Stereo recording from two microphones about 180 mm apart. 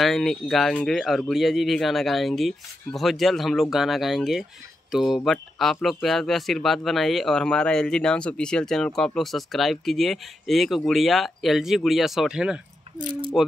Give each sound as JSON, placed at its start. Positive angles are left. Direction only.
{"t": 0.0, "sound": "speech", "side_deg": 0}